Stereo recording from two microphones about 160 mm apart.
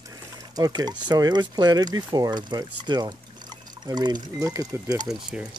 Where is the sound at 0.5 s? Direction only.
25° right (ahead or behind).